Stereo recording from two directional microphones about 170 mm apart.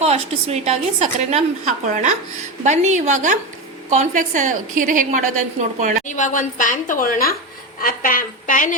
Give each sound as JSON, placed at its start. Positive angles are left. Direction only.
{"t": 0.0, "sound": "a woman's voice", "side_deg": -40}
{"t": 6.1, "sound": "a woman's voice", "side_deg": 45}